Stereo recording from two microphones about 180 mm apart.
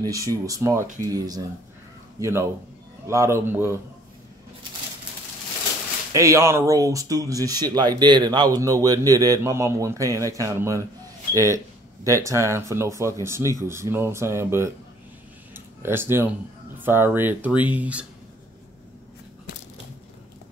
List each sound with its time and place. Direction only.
0.0 s a man's voice: 20° right (ahead or behind)
6.1 s speech: 15° right (ahead or behind)
15.5 s a sound: 10° right (ahead or behind)
16.8 s speech: 10° right (ahead or behind)